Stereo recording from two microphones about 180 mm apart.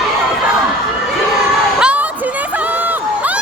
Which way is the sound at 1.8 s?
5° right (ahead or behind).